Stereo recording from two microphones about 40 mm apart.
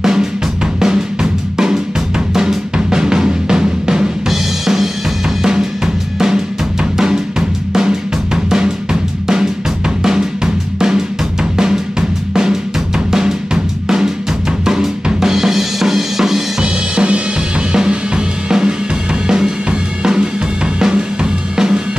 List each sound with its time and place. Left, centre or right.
0.0 s drum kit: centre
4.3 s drum: centre
5.4 s drum kit: centre
8.5 s drum: centre
14.6 s drum kit: centre
16.6 s drum: right